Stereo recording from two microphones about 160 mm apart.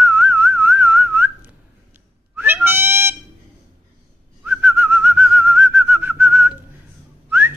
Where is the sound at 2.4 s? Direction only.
10° right (ahead or behind).